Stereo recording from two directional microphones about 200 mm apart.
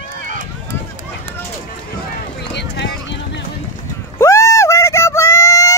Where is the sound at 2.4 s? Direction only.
60° left (ahead or behind).